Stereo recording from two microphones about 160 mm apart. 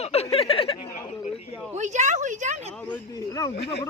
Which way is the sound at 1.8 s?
50° right (ahead or behind).